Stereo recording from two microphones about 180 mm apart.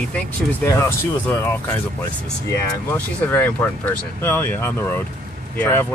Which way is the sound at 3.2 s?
10° left (ahead or behind).